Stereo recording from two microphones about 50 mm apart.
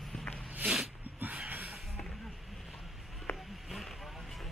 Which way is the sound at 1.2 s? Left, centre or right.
Right.